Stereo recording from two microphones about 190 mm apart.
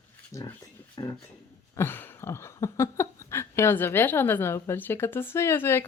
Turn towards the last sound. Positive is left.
turn(degrees=15)  # may be behind; listen again after turning